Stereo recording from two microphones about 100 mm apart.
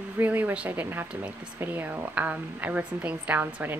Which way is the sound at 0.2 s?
20° right (ahead or behind).